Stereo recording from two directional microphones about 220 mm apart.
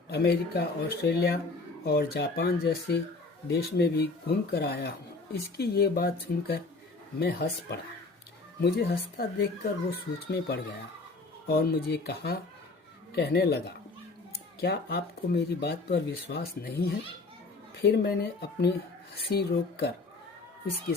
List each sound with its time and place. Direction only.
0.1 s speech: 45° left (ahead or behind)